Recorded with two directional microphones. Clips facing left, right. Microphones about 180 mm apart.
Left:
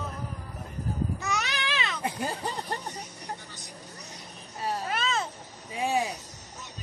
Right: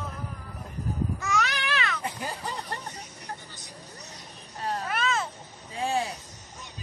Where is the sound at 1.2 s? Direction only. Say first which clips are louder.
Right 3 dB; 20° left (ahead or behind).